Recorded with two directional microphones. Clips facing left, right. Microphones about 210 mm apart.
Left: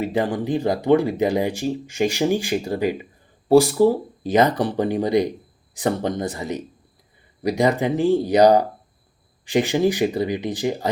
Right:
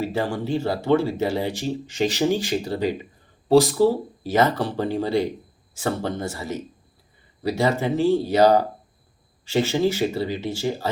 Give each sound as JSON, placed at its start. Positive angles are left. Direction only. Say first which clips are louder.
{"t": 0.0, "sound": "speech", "louder": "left 3 dB", "side_deg": 20}